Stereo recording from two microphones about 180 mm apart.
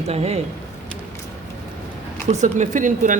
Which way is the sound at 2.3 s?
40° right (ahead or behind).